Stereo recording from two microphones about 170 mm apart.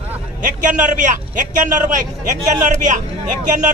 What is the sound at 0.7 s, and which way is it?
A man's voice, 50° right (ahead or behind).